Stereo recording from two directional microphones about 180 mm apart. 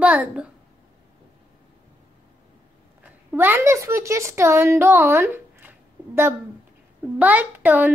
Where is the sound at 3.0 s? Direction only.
10° right (ahead or behind).